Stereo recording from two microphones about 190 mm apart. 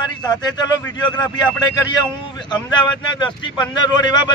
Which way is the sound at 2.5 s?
25° left (ahead or behind).